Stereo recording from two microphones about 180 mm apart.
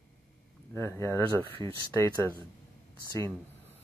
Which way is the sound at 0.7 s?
15° left (ahead or behind).